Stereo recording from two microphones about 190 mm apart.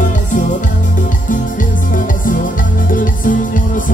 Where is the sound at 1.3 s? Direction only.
45° left (ahead or behind).